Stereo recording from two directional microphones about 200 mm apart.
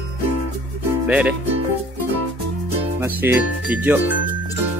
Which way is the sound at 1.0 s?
5° right (ahead or behind).